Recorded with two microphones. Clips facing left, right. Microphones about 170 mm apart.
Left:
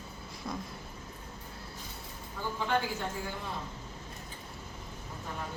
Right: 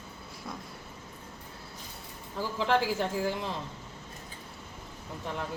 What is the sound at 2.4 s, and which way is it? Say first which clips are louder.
Speech: right 4 dB; 90° right.